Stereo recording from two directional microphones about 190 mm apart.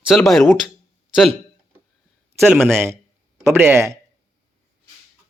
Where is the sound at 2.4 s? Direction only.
Centre (ahead or behind).